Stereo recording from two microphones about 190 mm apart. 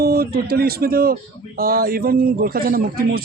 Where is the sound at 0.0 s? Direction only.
50° right (ahead or behind).